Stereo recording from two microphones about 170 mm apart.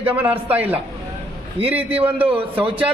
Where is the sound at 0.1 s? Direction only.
10° right (ahead or behind).